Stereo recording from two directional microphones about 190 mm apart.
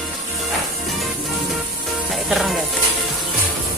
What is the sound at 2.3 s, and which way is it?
Speech, centre (ahead or behind).